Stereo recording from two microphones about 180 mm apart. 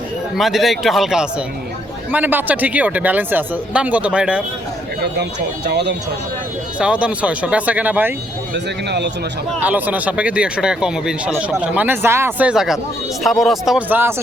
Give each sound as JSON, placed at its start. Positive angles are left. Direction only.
{"t": 0.3, "sound": "speech", "side_deg": 0}
{"t": 5.6, "sound": "speech", "side_deg": -70}
{"t": 6.7, "sound": "speech", "side_deg": -5}
{"t": 8.5, "sound": "speech", "side_deg": -70}
{"t": 9.6, "sound": "speech", "side_deg": -10}